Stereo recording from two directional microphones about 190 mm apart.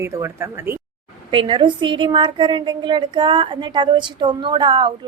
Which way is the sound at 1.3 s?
25° right (ahead or behind).